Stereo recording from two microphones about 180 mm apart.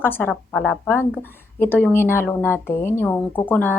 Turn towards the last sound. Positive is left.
turn(degrees=10)  # may be behind; listen again after turning